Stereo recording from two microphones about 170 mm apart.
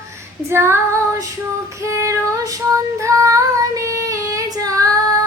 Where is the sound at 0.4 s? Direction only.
15° right (ahead or behind).